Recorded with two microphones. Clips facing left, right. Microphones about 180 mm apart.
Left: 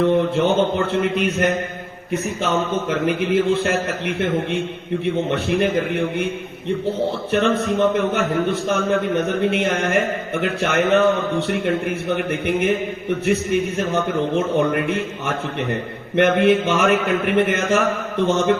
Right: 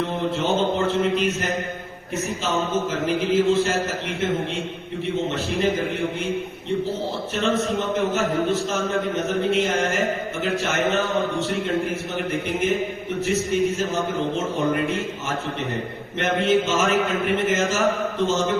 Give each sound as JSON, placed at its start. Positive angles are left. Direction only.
{"t": 0.3, "sound": "mantra", "side_deg": 60}
{"t": 2.4, "sound": "a man's voice", "side_deg": 65}
{"t": 5.3, "sound": "a man's voice", "side_deg": 65}
{"t": 7.3, "sound": "a man's voice", "side_deg": 60}